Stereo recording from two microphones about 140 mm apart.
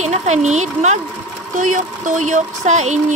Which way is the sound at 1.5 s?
70° right (ahead or behind).